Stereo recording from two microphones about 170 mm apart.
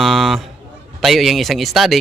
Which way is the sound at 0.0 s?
Centre (ahead or behind).